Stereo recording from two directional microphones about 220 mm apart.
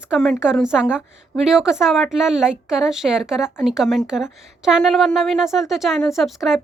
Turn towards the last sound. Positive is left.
turn(degrees=0)  # may be behind; listen again after turning